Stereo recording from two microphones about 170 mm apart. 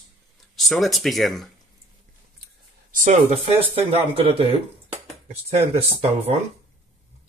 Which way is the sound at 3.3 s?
30° right (ahead or behind).